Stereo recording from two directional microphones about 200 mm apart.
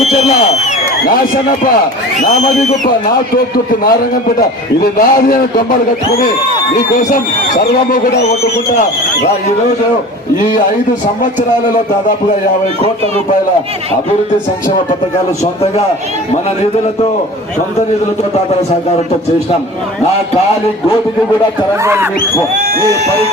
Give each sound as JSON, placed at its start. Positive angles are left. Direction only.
{"t": 1.0, "sound": "a man's voice", "side_deg": 45}
{"t": 3.3, "sound": "a man's voice", "side_deg": 45}
{"t": 6.9, "sound": "speech", "side_deg": 40}
{"t": 7.9, "sound": "a man's voice", "side_deg": 50}
{"t": 21.8, "sound": "speech", "side_deg": -10}